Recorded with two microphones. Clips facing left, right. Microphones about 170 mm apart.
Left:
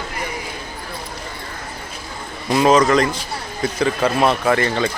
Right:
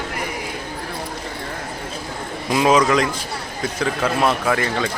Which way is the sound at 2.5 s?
5° right (ahead or behind).